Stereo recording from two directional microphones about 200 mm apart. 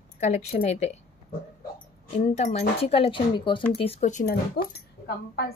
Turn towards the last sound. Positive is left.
turn(degrees=55)  # may be behind; listen again after turning